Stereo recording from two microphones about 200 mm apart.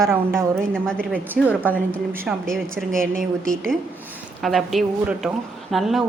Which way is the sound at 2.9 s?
45° right (ahead or behind).